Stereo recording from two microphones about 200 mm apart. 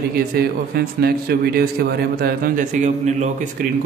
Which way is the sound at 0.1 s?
50° right (ahead or behind).